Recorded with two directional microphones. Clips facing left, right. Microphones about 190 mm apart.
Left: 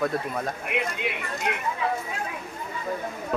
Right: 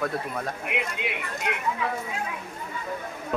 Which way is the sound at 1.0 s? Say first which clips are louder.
Left 2 dB; 15° right (ahead or behind).